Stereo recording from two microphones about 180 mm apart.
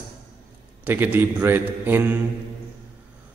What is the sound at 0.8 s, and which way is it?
A man's voice, 10° right (ahead or behind).